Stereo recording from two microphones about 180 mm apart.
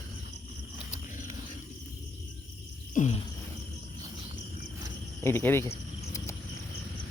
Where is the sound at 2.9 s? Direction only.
40° left (ahead or behind).